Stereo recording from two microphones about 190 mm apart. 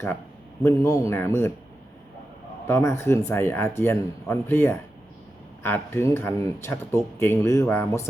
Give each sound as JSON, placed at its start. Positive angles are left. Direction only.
{"t": 0.6, "sound": "speech", "side_deg": 15}
{"t": 2.6, "sound": "speech", "side_deg": 15}